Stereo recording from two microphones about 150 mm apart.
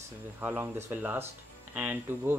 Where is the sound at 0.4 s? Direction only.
15° right (ahead or behind).